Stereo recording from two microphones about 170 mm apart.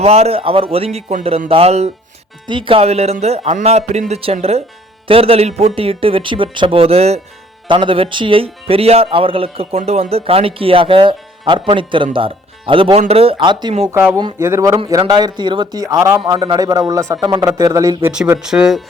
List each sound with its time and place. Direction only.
0.0 s speech: 40° right (ahead or behind); by 18.1 s 20° right (ahead or behind)
18.1 s speech: 5° right (ahead or behind)